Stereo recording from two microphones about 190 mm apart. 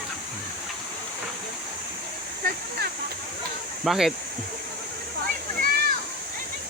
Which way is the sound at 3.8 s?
Centre (ahead or behind).